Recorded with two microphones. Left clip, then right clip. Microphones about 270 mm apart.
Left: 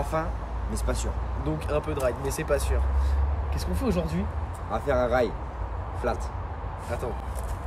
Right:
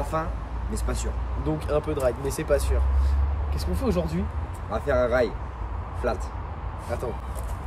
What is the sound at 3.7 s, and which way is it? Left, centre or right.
Speech, centre.